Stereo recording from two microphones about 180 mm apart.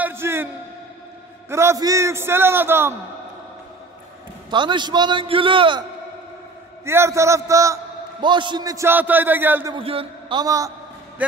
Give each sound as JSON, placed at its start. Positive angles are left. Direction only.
{"t": 0.0, "sound": "a sound", "side_deg": -15}
{"t": 1.5, "sound": "a man's voice", "side_deg": -15}
{"t": 4.5, "sound": "a man's voice", "side_deg": -25}
{"t": 6.8, "sound": "a man's voice", "side_deg": -15}
{"t": 9.8, "sound": "a man's voice", "side_deg": -30}
{"t": 10.4, "sound": "a man's voice", "side_deg": -20}